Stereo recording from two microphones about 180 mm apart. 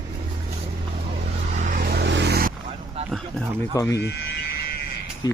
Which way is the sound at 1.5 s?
45° right (ahead or behind).